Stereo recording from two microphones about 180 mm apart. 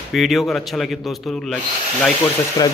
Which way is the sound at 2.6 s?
20° left (ahead or behind).